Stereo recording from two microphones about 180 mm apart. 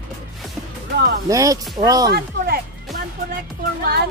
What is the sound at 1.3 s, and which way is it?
Speech, 20° right (ahead or behind).